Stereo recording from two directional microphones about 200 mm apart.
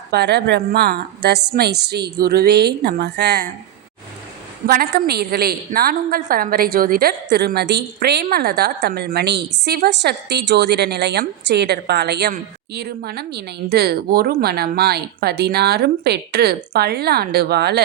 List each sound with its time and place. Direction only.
0.1 s a woman's voice: 55° right (ahead or behind)
4.6 s a woman's voice: 50° right (ahead or behind)